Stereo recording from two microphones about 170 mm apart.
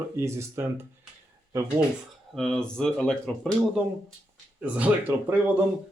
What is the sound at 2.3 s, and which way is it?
Speech, centre (ahead or behind).